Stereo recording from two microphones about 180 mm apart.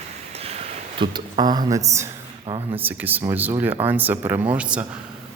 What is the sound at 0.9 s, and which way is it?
Speech, 25° right (ahead or behind).